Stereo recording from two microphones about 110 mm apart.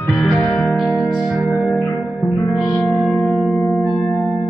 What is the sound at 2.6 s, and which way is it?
Music, 30° left (ahead or behind).